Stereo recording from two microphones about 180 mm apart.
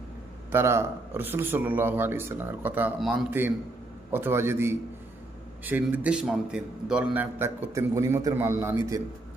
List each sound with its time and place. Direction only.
0.5 s a man's voice: 15° right (ahead or behind)